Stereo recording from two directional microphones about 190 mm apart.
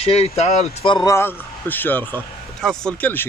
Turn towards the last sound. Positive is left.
turn(degrees=5)  # may be behind; listen again after turning